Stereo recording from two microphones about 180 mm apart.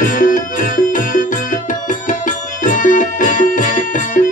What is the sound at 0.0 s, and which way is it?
Music, 45° left (ahead or behind).